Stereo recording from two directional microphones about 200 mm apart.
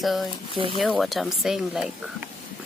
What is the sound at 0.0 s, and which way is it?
Speech, centre (ahead or behind).